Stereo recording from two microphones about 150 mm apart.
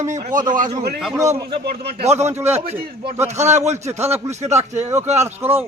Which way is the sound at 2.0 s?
45° right (ahead or behind).